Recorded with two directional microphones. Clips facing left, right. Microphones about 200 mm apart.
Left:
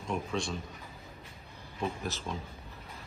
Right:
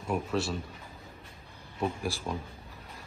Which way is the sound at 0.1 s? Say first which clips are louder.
Right 3 dB; 5° right (ahead or behind).